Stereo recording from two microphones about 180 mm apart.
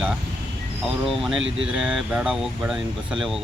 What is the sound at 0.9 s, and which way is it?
Speech, centre (ahead or behind).